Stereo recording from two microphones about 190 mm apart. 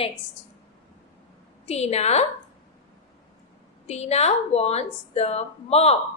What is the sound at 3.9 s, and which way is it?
A woman's voice, 35° left (ahead or behind).